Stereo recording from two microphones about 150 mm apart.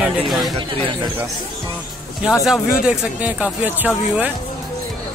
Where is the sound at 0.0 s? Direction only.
Centre (ahead or behind).